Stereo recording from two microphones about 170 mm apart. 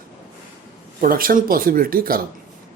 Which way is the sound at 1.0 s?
55° right (ahead or behind).